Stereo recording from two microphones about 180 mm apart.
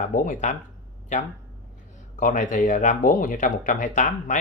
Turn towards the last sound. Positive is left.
turn(degrees=45)  # may be behind; listen again after turning